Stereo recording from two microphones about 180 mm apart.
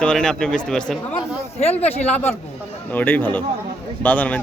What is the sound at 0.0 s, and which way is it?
Speech, 5° left (ahead or behind).